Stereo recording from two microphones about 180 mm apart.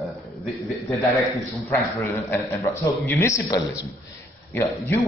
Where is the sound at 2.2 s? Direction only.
15° left (ahead or behind).